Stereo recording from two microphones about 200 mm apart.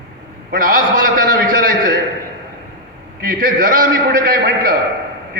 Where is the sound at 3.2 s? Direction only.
45° right (ahead or behind).